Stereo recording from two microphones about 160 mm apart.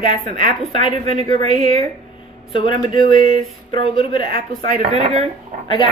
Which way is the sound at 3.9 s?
35° left (ahead or behind).